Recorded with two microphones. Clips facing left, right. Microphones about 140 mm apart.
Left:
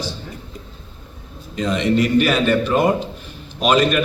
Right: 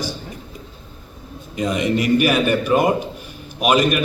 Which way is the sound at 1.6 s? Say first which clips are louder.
Left 2 dB; 10° right (ahead or behind).